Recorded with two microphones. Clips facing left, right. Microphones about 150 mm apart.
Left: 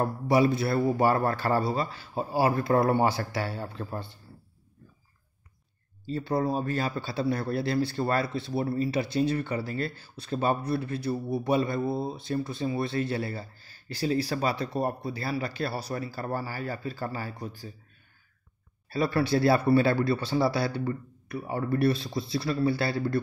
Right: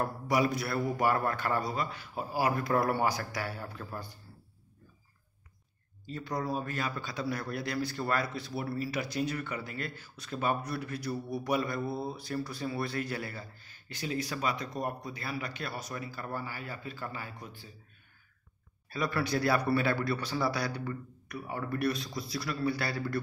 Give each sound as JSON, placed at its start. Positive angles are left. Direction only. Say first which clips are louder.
{"t": 0.0, "sound": "a man's voice", "louder": "left 6 dB", "side_deg": 25}
{"t": 6.0, "sound": "speech", "louder": "left 7 dB", "side_deg": 30}
{"t": 18.9, "sound": "a man's voice", "louder": "left 6 dB", "side_deg": 30}